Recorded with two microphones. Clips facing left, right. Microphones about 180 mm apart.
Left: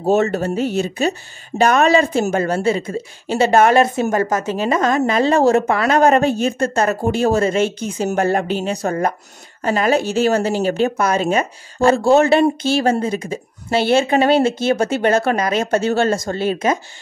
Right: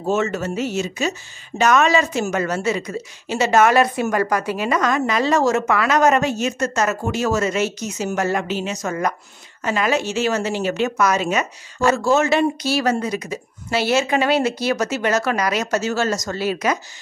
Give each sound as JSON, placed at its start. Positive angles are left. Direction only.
{"t": 0.0, "sound": "a woman's voice", "side_deg": 35}